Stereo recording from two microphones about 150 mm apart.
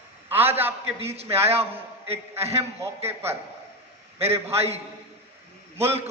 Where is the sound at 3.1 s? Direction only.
15° right (ahead or behind).